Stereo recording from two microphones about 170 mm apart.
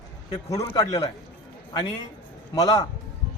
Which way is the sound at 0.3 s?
25° left (ahead or behind).